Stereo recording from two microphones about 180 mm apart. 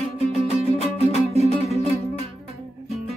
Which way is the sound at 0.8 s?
35° left (ahead or behind).